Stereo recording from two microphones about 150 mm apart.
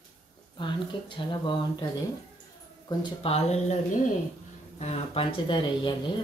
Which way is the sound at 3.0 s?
40° left (ahead or behind).